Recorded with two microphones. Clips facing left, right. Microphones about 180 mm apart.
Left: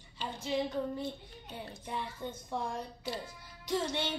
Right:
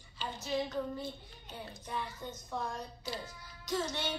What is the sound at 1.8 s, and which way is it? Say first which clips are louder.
Speech: left 1 dB; 25° left (ahead or behind).